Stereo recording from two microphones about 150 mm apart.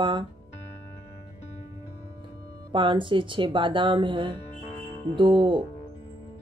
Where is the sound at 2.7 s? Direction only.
35° right (ahead or behind).